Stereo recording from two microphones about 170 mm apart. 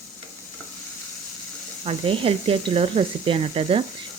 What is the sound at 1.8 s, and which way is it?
Speech, 35° right (ahead or behind).